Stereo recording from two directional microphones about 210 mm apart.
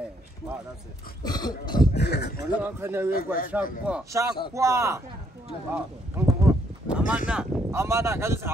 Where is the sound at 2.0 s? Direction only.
50° left (ahead or behind).